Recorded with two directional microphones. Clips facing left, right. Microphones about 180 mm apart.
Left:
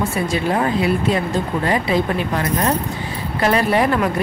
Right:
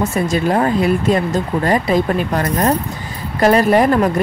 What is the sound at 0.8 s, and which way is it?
Speech, 45° right (ahead or behind).